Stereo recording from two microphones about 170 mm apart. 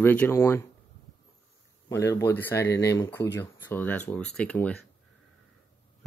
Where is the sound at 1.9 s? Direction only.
15° left (ahead or behind).